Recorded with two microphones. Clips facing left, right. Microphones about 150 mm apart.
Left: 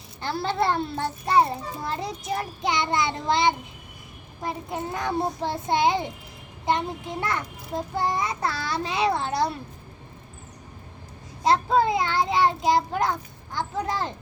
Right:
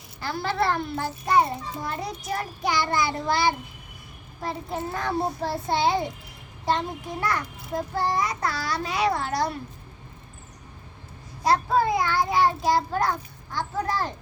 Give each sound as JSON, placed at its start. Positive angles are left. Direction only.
{"t": 0.2, "sound": "a child's voice", "side_deg": 25}
{"t": 11.4, "sound": "a child's voice", "side_deg": 25}